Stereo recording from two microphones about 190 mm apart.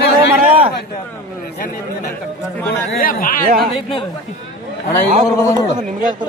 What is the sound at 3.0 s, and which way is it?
Speech, 45° left (ahead or behind).